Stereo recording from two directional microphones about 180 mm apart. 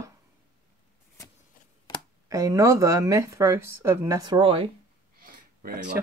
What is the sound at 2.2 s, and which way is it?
Speech, 20° right (ahead or behind).